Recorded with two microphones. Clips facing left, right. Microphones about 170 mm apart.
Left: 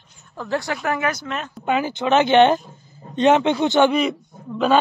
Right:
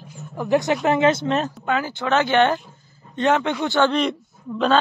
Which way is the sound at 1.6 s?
20° left (ahead or behind).